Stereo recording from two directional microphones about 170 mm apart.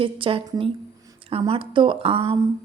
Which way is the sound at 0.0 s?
30° right (ahead or behind).